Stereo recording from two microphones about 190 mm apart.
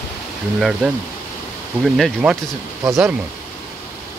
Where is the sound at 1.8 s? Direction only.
Centre (ahead or behind).